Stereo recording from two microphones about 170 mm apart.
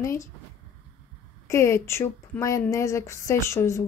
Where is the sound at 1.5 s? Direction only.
15° left (ahead or behind).